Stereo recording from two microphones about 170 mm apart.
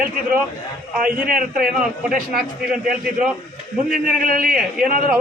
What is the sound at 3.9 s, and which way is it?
Speech, 55° right (ahead or behind).